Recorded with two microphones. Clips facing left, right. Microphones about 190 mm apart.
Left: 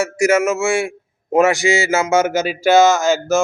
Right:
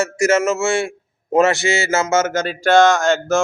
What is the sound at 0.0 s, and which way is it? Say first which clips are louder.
A man's voice: left 1 dB; 10° left (ahead or behind).